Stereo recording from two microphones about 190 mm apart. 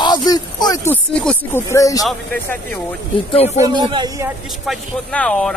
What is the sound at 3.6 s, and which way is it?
Speech, 20° right (ahead or behind).